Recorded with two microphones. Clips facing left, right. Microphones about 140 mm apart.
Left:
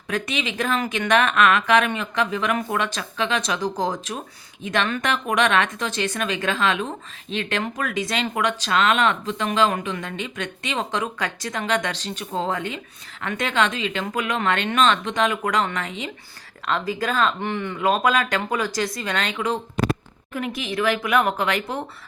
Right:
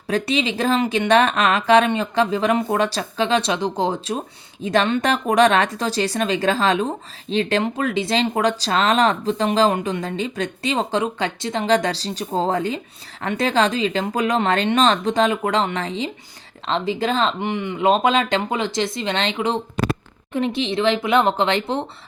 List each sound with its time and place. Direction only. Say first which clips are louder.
0.1 s speech: right 6 dB; 30° right (ahead or behind)